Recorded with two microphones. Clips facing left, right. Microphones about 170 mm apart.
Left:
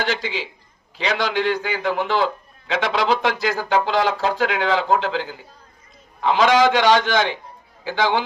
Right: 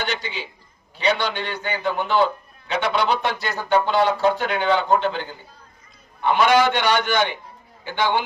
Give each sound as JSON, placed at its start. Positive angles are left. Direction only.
{"t": 0.0, "sound": "a man's voice", "side_deg": 90}